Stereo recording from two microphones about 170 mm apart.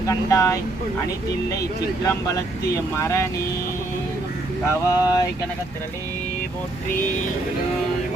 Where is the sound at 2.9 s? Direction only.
15° left (ahead or behind).